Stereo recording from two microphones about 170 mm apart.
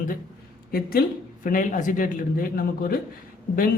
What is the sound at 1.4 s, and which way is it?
A man's voice, 50° left (ahead or behind).